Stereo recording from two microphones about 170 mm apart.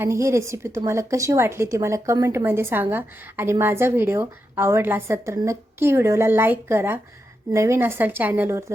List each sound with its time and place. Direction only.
0.0 s a woman's voice: 15° right (ahead or behind)